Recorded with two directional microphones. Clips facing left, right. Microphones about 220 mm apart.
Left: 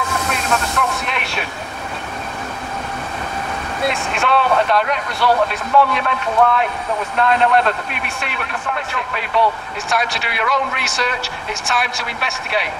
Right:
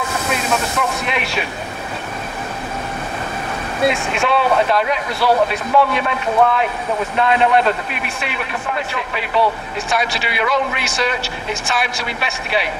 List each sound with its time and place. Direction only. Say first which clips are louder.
0.5 s a man's voice: left 2 dB; 5° right (ahead or behind)
3.9 s a man's voice: right 1 dB; centre (ahead or behind)